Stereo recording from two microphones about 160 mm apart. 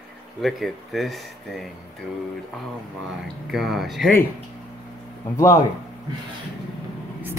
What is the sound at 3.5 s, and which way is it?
Speech, centre (ahead or behind).